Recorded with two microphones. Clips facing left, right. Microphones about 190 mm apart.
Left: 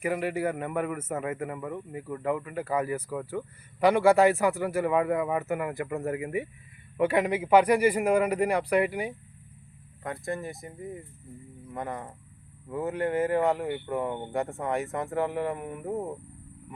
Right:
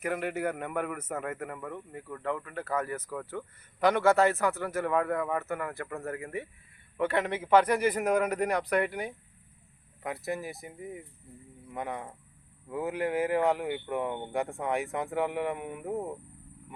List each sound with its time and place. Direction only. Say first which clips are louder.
0.0 s speech: left 3 dB; 5° left (ahead or behind)
10.0 s speech: left 1 dB; 5° right (ahead or behind)